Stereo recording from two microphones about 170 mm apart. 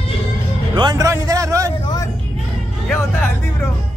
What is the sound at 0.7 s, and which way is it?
Music, 25° right (ahead or behind).